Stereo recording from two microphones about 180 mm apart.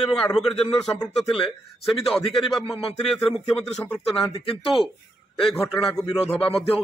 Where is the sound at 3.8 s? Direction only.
5° left (ahead or behind).